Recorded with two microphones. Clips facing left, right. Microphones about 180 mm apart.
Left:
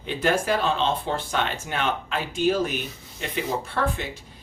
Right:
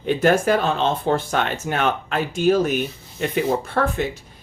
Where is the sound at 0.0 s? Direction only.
45° right (ahead or behind).